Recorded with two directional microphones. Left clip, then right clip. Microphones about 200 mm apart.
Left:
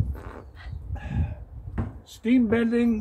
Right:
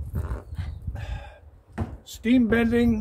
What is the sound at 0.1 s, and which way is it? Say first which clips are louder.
Dog: right 2 dB; 30° right (ahead or behind).